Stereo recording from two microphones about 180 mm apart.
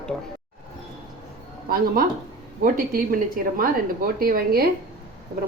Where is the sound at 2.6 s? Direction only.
55° right (ahead or behind).